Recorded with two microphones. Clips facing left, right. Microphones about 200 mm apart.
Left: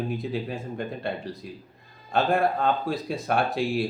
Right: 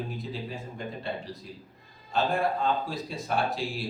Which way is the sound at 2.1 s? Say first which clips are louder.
Left 4 dB; 60° left (ahead or behind).